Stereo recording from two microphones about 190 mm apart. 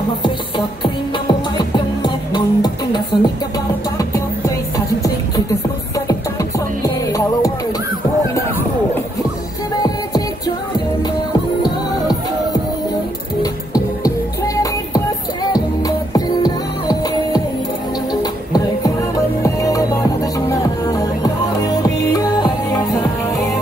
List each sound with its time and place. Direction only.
0.8 s music: 25° left (ahead or behind)
4.7 s music: 15° left (ahead or behind)
9.8 s music: 20° left (ahead or behind)
13.4 s music: 20° left (ahead or behind)
16.1 s music: 20° left (ahead or behind)
18.5 s music: 20° left (ahead or behind)